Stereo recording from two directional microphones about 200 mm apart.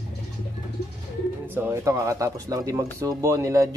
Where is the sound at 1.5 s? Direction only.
15° right (ahead or behind).